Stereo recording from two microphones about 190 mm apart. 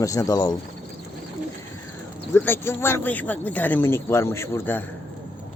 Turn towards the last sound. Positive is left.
turn(degrees=10)  # may be behind; listen again after turning